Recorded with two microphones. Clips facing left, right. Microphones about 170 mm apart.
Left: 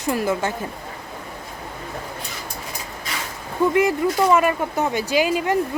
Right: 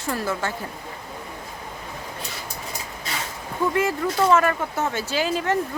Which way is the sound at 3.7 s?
15° left (ahead or behind).